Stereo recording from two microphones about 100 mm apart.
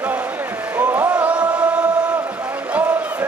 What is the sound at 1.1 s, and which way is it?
Music, 15° right (ahead or behind).